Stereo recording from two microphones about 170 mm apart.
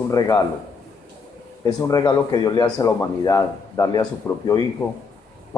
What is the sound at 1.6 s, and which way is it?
A man's voice, 20° left (ahead or behind).